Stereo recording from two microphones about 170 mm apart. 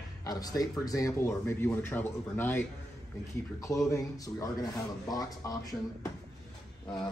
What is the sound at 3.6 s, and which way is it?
Speech, 20° left (ahead or behind).